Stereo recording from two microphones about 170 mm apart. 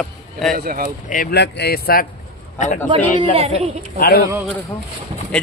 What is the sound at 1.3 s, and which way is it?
Speech, 80° left.